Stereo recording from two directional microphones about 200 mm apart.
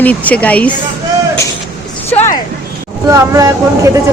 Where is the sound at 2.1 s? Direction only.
15° left (ahead or behind).